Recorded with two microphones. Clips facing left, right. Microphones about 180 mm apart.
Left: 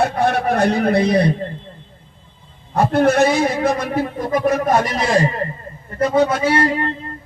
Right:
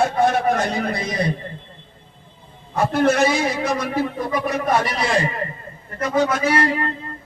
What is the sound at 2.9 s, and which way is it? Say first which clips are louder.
A man's voice: left 3 dB; 55° left (ahead or behind).